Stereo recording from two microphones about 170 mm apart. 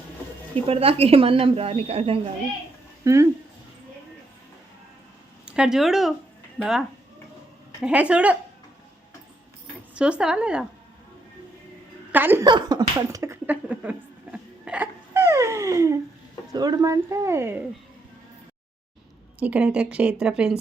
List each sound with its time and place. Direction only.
0.5 s a woman's voice: 35° right (ahead or behind)
3.0 s speech: 20° right (ahead or behind)
5.5 s a woman's voice: 5° right (ahead or behind)
9.9 s speech: 5° right (ahead or behind)
12.1 s a woman's voice: 10° right (ahead or behind)
12.5 s speech: 25° right (ahead or behind)
13.1 s hiccup: 15° right (ahead or behind)
16.5 s speech: 20° right (ahead or behind)
19.4 s a woman's voice: 10° right (ahead or behind)